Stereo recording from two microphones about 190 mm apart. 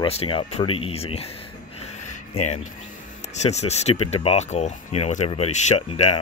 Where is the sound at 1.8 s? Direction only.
35° left (ahead or behind).